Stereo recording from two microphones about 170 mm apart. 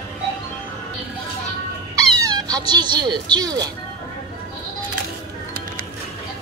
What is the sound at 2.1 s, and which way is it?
Speech, 20° right (ahead or behind).